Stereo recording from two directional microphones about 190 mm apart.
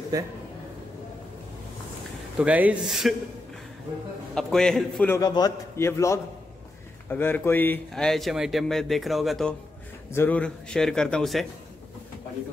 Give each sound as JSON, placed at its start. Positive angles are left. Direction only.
{"t": 2.3, "sound": "speech", "side_deg": -5}
{"t": 4.4, "sound": "speech", "side_deg": 5}
{"t": 5.1, "sound": "a man's voice", "side_deg": 20}